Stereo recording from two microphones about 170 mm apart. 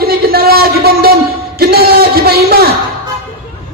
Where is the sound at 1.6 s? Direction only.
65° right (ahead or behind).